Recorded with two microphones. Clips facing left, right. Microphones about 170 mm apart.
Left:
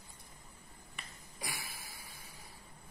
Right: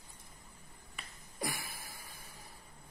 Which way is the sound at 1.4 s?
50° right (ahead or behind).